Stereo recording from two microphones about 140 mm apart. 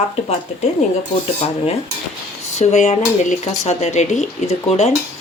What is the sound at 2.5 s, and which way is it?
Speech, 50° left (ahead or behind).